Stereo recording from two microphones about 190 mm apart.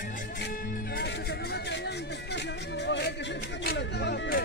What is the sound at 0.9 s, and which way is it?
Music, 60° left (ahead or behind).